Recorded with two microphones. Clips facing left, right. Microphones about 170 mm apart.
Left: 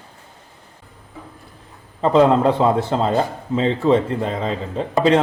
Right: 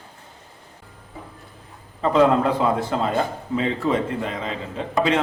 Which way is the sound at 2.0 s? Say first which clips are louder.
Left 3 dB; 30° left (ahead or behind).